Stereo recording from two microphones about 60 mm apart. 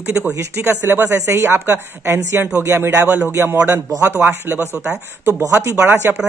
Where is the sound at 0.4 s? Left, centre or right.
Right.